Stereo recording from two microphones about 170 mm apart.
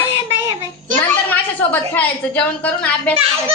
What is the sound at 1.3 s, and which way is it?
A woman's voice, 10° left (ahead or behind).